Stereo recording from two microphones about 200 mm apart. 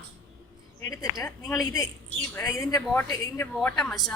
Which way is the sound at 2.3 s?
15° left (ahead or behind).